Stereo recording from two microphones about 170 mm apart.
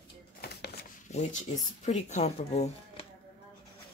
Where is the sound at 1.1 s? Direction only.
40° left (ahead or behind).